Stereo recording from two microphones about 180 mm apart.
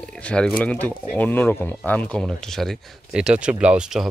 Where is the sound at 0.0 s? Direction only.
5° left (ahead or behind).